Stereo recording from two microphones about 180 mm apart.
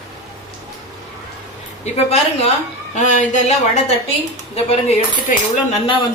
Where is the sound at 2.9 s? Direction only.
40° left (ahead or behind).